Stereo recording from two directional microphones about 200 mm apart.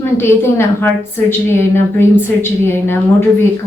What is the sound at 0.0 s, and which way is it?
A woman's voice, 10° left (ahead or behind).